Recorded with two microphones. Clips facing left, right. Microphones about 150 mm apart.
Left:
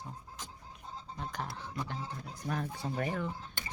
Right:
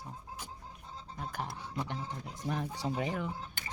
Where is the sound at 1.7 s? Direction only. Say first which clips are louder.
Right 1 dB; 20° right (ahead or behind).